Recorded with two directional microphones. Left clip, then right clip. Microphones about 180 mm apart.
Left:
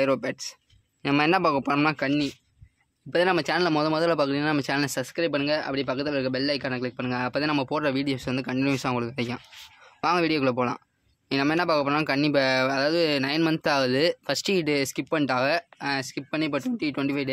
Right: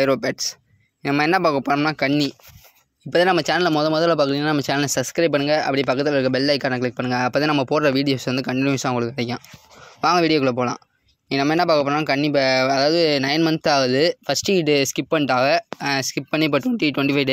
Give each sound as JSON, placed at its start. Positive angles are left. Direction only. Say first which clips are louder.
{"t": 0.0, "sound": "speech", "louder": "right 5 dB", "side_deg": -20}
{"t": 1.0, "sound": "speech", "louder": "right 4 dB", "side_deg": -15}
{"t": 3.1, "sound": "speech", "louder": "right 6 dB", "side_deg": -25}
{"t": 15.8, "sound": "speech", "louder": "right 6 dB", "side_deg": -40}